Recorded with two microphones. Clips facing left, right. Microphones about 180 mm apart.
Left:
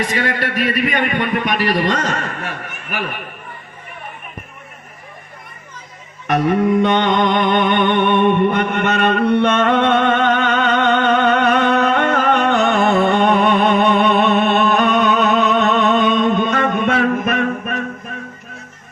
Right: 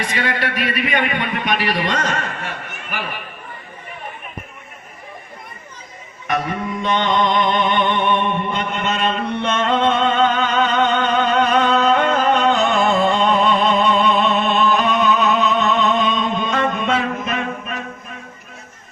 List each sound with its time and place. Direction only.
0.1 s a man's voice: 45° left (ahead or behind)
6.8 s music: 60° left (ahead or behind)